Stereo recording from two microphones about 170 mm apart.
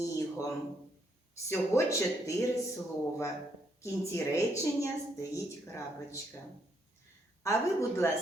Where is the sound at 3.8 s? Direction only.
15° left (ahead or behind).